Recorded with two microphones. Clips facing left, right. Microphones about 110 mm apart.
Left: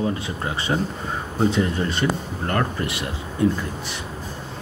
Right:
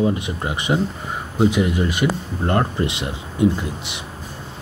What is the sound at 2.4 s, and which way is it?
Speech, 20° right (ahead or behind).